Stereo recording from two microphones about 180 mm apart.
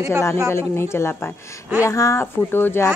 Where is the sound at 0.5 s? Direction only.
15° left (ahead or behind).